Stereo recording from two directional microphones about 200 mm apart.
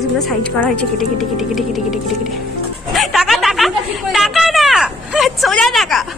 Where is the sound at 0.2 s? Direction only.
5° left (ahead or behind).